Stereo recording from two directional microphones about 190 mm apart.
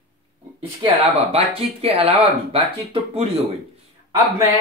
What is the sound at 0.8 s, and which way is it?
Speech, 30° right (ahead or behind).